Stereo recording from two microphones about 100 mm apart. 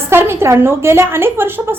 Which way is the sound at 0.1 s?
25° right (ahead or behind).